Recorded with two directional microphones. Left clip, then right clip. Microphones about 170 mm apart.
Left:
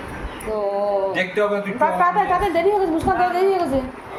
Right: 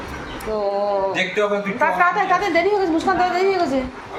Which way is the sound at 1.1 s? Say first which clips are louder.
Even; 90° left.